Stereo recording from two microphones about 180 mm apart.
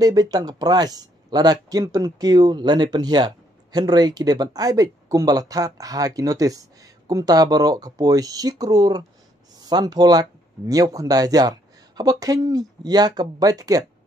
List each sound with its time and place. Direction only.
0.0 s speech: 20° right (ahead or behind)